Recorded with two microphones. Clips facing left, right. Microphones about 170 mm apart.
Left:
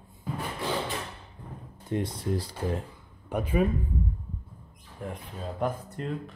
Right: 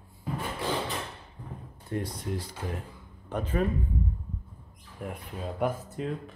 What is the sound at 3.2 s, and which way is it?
Speech, 10° left (ahead or behind).